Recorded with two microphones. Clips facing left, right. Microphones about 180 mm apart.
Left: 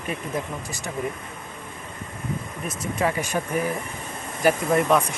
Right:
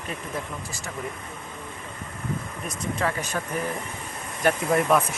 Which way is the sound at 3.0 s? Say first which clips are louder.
Left 4 dB; 10° left (ahead or behind).